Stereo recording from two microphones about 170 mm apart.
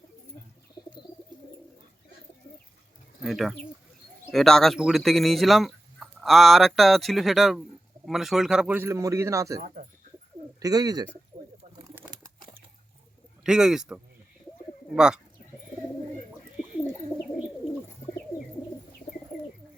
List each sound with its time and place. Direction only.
3.2 s a man's voice: centre (ahead or behind); by 11.0 s 20° right (ahead or behind)
11.9 s a sound: 10° right (ahead or behind)
13.4 s speech: 5° right (ahead or behind)